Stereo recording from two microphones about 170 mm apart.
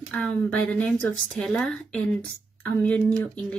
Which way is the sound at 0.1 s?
5° left (ahead or behind).